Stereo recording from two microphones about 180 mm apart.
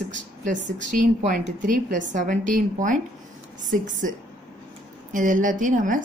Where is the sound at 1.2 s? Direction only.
50° right (ahead or behind).